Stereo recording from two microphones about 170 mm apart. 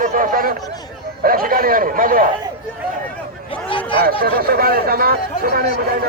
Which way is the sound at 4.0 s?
65° right (ahead or behind).